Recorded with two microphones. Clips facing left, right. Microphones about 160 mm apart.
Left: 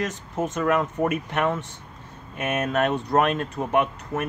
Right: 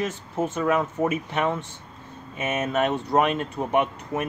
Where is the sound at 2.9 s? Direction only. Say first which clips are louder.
Left 1 dB; 15° left (ahead or behind).